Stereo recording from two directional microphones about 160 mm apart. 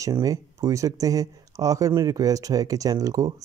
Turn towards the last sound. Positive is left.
turn(degrees=-20)  # may be behind; listen again after turning